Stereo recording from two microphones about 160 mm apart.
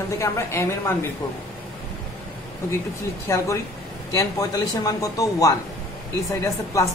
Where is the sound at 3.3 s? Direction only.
20° left (ahead or behind).